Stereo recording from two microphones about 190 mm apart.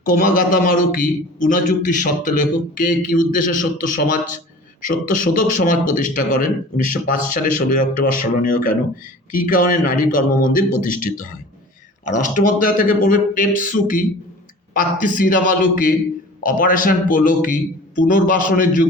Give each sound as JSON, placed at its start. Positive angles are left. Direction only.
{"t": 0.0, "sound": "a man's voice", "side_deg": 45}
{"t": 12.3, "sound": "a man's voice", "side_deg": 45}